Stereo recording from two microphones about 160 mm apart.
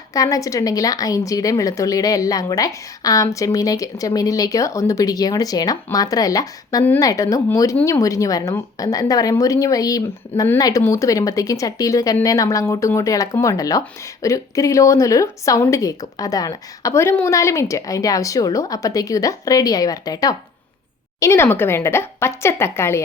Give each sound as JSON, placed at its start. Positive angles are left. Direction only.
{"t": 0.1, "sound": "a woman's voice", "side_deg": 20}